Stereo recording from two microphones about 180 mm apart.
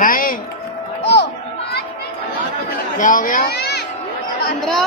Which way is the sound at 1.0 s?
70° left (ahead or behind).